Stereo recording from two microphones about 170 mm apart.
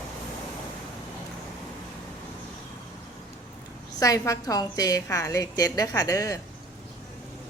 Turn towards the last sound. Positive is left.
turn(degrees=20)  # may be behind; listen again after turning